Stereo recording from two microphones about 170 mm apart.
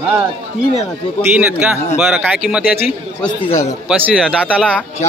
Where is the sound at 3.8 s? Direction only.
5° right (ahead or behind).